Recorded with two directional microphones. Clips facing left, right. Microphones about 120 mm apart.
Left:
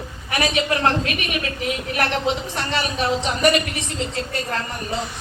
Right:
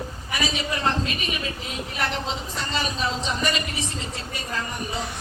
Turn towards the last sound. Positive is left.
turn(degrees=75)  # may be behind; listen again after turning